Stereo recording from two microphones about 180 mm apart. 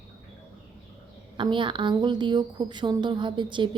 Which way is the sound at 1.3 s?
25° right (ahead or behind).